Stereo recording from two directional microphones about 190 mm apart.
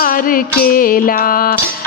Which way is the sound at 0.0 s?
45° left (ahead or behind).